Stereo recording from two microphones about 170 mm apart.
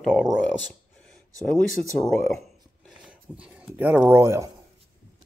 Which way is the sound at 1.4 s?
5° left (ahead or behind).